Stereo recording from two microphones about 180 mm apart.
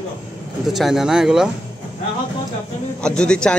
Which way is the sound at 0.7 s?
Centre (ahead or behind).